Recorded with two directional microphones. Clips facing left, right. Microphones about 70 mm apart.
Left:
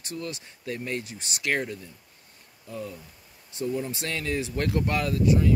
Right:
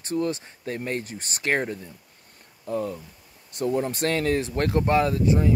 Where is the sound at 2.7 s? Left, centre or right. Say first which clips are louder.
Right 8 dB; right.